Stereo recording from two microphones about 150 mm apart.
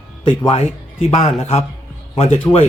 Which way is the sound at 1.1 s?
40° left (ahead or behind).